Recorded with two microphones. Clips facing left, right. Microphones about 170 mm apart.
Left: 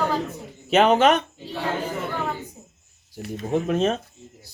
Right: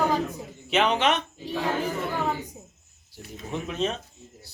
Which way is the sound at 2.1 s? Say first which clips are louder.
Right 1 dB; 15° right (ahead or behind).